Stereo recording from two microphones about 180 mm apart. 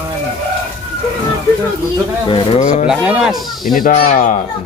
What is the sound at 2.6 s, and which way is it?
Speech, 40° left (ahead or behind).